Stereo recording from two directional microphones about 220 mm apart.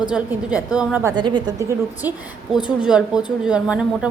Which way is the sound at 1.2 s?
20° right (ahead or behind).